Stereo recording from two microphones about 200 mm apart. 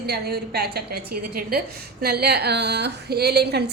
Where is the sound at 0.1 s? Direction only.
55° right (ahead or behind).